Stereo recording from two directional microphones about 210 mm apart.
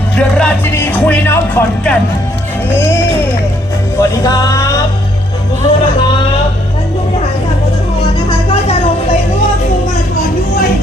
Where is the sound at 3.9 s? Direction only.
15° left (ahead or behind).